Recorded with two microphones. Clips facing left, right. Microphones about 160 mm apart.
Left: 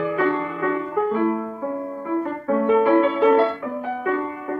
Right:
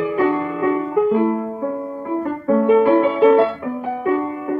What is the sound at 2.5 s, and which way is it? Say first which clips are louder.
Music: right 4 dB; 15° right (ahead or behind).